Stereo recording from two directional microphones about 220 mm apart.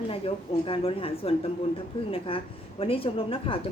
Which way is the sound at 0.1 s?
25° left (ahead or behind).